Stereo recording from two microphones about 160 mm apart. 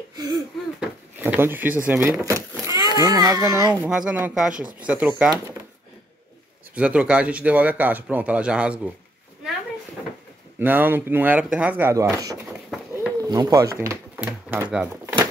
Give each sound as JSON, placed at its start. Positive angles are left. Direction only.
{"t": 0.7, "sound": "drawer open or close", "side_deg": -10}
{"t": 1.9, "sound": "a child's voice", "side_deg": -10}
{"t": 3.7, "sound": "speech", "side_deg": -5}
{"t": 6.7, "sound": "speech", "side_deg": -5}
{"t": 10.6, "sound": "speech", "side_deg": -10}
{"t": 12.4, "sound": "a sound", "side_deg": -10}
{"t": 13.2, "sound": "a sound", "side_deg": -25}